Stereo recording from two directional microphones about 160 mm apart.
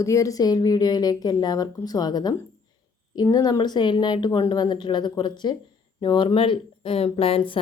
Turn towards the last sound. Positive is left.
turn(degrees=35)  # may be behind; listen again after turning